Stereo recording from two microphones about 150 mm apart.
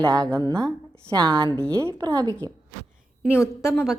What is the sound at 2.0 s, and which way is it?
Speech, 30° right (ahead or behind).